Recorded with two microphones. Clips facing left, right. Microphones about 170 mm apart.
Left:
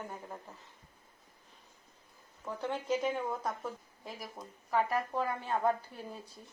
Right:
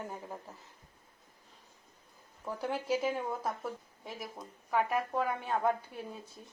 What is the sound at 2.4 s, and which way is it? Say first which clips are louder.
Speech: right 1 dB; 10° right (ahead or behind).